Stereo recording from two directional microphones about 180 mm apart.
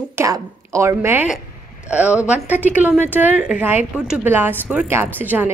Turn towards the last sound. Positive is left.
turn(degrees=-10)  # may be behind; listen again after turning